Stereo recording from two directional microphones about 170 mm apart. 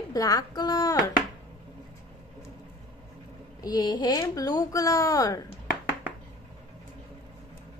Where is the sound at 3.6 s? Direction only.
25° left (ahead or behind).